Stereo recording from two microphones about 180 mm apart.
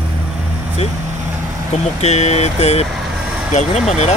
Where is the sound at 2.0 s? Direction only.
35° left (ahead or behind).